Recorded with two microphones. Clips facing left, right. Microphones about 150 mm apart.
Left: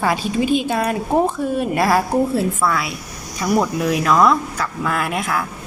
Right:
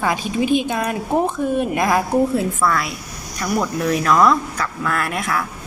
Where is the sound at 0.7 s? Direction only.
5° left (ahead or behind).